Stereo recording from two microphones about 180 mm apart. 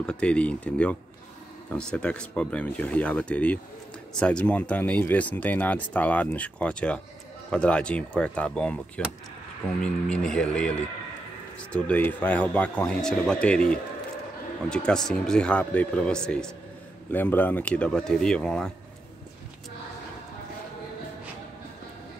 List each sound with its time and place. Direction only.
0.0 s speech: 5° left (ahead or behind)
14.7 s speech: 5° left (ahead or behind)